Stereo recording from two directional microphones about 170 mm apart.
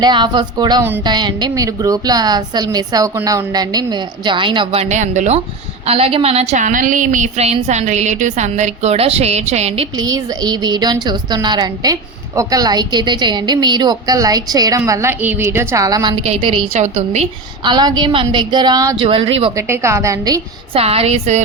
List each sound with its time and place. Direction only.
0.0 s a woman's voice: 25° right (ahead or behind)
10.0 s a woman's voice: 25° right (ahead or behind)
16.1 s a woman's voice: 35° right (ahead or behind)
17.6 s a woman's voice: 25° right (ahead or behind)
19.5 s a woman's voice: 15° right (ahead or behind)
20.7 s a woman's voice: 35° right (ahead or behind)